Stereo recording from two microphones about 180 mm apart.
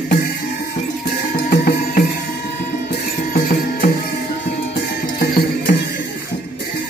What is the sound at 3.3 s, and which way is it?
Music, 55° left (ahead or behind).